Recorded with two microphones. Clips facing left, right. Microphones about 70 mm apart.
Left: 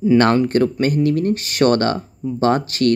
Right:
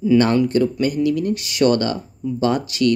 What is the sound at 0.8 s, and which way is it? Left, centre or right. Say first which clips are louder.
Speech: left 2 dB; left.